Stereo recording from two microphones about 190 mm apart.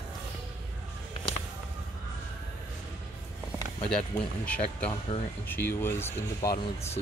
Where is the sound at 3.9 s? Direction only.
5° left (ahead or behind).